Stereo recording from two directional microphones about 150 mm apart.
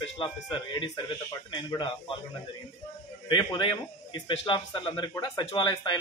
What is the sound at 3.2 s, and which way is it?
A man's voice, 30° left (ahead or behind).